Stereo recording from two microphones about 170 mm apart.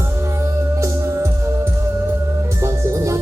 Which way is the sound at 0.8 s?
15° right (ahead or behind).